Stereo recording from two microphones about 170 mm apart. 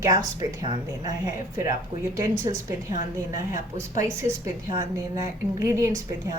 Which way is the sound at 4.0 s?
15° right (ahead or behind).